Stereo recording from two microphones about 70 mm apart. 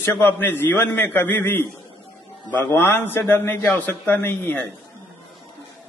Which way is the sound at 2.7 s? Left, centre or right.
Left.